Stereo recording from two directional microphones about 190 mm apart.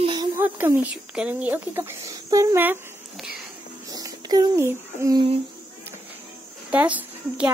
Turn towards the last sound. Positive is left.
turn(degrees=-10)  # may be behind; listen again after turning